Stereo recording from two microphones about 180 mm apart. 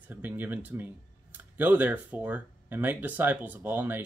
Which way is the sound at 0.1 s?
10° right (ahead or behind).